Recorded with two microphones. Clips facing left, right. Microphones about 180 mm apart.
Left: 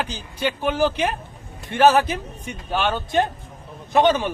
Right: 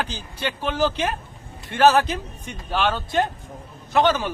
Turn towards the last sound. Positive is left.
turn(degrees=20)  # may be behind; listen again after turning